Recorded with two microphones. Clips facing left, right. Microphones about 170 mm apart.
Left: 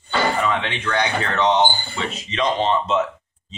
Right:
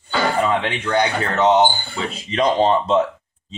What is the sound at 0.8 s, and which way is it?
Speech, 30° right (ahead or behind).